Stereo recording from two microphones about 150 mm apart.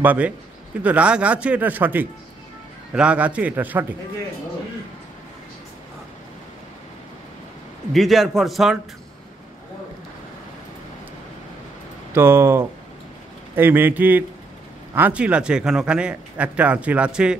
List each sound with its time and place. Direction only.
0.0 s speech: 10° right (ahead or behind)
7.9 s a man's voice: centre (ahead or behind)
12.1 s speech: 15° right (ahead or behind)